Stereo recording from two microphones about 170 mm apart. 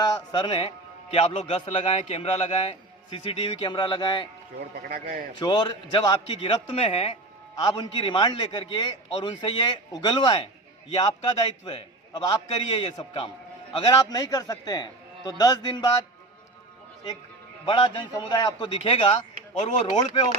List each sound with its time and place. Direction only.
0.0 s a man's voice: 25° left (ahead or behind)
4.8 s a man's voice: 60° right (ahead or behind)
5.3 s a man's voice: 25° left (ahead or behind)
17.7 s a man's voice: 30° left (ahead or behind)